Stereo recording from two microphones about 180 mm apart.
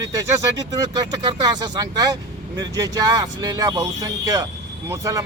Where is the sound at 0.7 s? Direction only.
20° right (ahead or behind).